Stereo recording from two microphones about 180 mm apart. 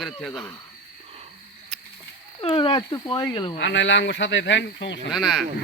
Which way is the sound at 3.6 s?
90° left.